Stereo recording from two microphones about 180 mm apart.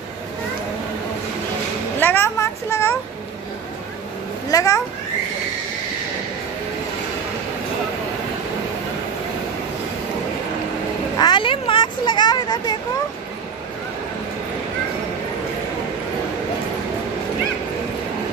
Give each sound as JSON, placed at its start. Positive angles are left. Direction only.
{"t": 2.0, "sound": "a sound", "side_deg": 10}
{"t": 4.5, "sound": "a child's voice", "side_deg": 20}
{"t": 11.1, "sound": "vehicle", "side_deg": 25}